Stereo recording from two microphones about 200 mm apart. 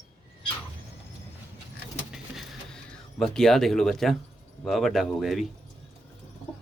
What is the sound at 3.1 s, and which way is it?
Speech, centre (ahead or behind).